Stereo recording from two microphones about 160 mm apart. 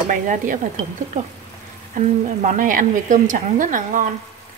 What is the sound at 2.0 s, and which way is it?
Speech, 50° right (ahead or behind).